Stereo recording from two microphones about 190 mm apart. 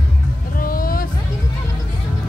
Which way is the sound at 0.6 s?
50° left (ahead or behind).